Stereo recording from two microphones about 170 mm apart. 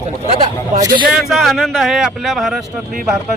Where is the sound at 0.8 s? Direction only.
20° right (ahead or behind).